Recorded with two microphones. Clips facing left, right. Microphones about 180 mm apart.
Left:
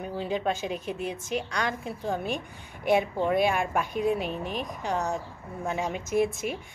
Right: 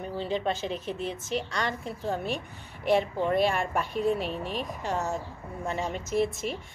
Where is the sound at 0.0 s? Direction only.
10° left (ahead or behind).